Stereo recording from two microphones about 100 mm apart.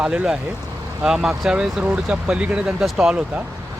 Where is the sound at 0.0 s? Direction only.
10° right (ahead or behind).